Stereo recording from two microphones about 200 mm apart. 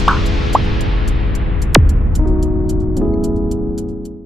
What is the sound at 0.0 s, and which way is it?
Music, centre (ahead or behind).